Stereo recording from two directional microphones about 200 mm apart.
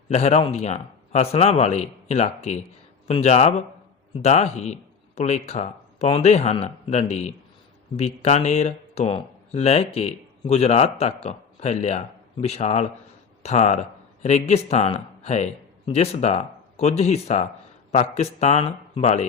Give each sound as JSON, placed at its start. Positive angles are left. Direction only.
{"t": 0.1, "sound": "speech", "side_deg": 35}